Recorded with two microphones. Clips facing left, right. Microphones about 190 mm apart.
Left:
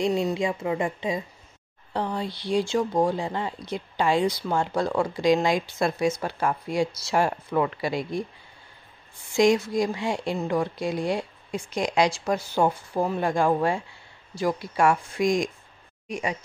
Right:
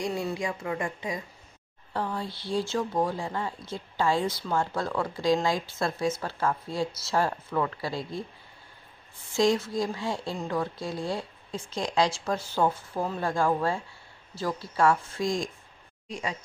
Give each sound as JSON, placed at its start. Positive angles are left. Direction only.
{"t": 0.0, "sound": "a woman's voice", "side_deg": 20}
{"t": 9.3, "sound": "speech", "side_deg": 15}